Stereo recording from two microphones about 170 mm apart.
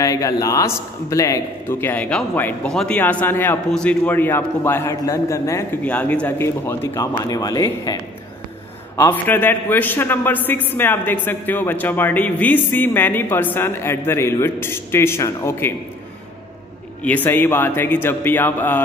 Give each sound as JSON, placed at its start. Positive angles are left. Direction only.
{"t": 0.0, "sound": "a man's voice", "side_deg": 20}
{"t": 17.0, "sound": "a man's voice", "side_deg": 10}